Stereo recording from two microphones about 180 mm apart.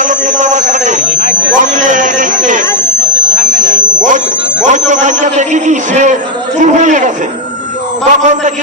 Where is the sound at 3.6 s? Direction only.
45° right (ahead or behind).